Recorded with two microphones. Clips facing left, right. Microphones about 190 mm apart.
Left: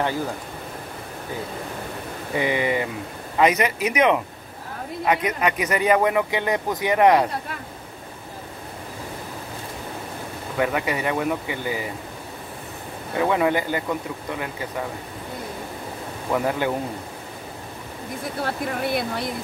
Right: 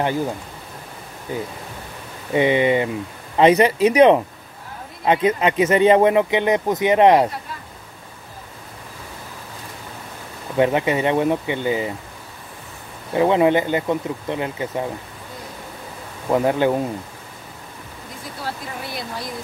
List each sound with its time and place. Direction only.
2.3 s speech: 20° right (ahead or behind)
10.6 s speech: 25° right (ahead or behind)
13.1 s speech: 25° right (ahead or behind)
16.3 s speech: 20° right (ahead or behind)
18.4 s speech: 60° left (ahead or behind)